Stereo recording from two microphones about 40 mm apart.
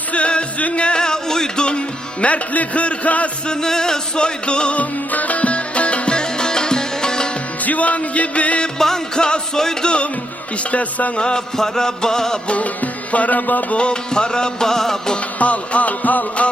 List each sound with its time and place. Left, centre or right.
0.1 s music: left
2.2 s music: left
3.4 s music: centre
4.8 s music: left; by 7.3 s centre
7.6 s music: left
8.8 s music: centre
10.6 s music: left
11.2 s music: centre
12.5 s music: left
13.7 s music: left
15.4 s music: left